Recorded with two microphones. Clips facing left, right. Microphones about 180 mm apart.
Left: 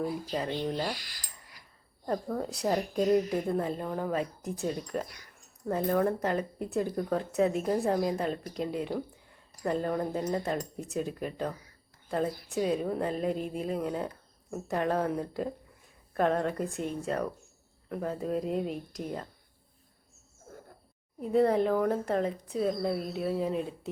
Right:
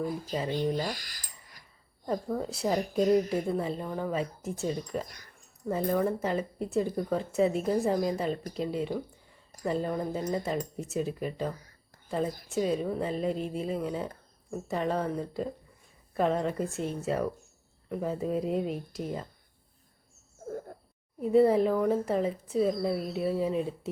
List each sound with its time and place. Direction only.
0.5 s speech: 45° right (ahead or behind)
0.9 s a sound: 45° right (ahead or behind)
2.0 s a woman's voice: centre (ahead or behind)
21.2 s a woman's voice: centre (ahead or behind)